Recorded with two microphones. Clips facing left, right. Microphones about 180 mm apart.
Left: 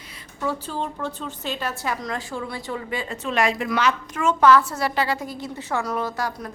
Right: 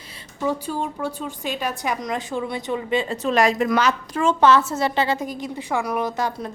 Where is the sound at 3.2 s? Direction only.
40° right (ahead or behind).